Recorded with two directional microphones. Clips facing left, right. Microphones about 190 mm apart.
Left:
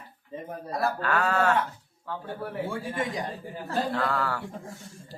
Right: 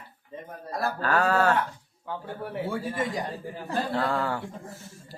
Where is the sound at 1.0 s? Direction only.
40° right (ahead or behind).